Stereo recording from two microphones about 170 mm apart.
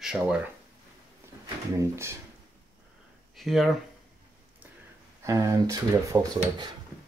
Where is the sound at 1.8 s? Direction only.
15° right (ahead or behind).